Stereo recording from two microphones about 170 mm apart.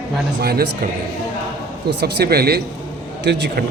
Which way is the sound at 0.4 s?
70° right (ahead or behind).